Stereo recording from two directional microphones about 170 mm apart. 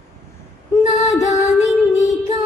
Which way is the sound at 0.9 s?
45° left (ahead or behind).